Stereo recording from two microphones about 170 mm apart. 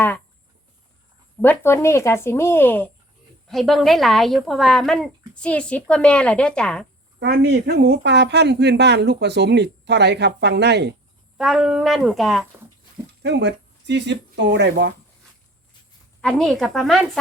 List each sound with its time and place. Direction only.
1.4 s speech: 15° left (ahead or behind)
3.5 s speech: centre (ahead or behind)
7.2 s a woman's voice: 70° right (ahead or behind)
11.3 s speech: 5° right (ahead or behind)
13.2 s speech: 90° right
16.2 s speech: 5° left (ahead or behind)